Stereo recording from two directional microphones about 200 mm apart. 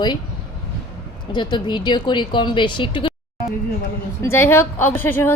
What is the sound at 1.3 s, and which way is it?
A woman's voice, 20° left (ahead or behind).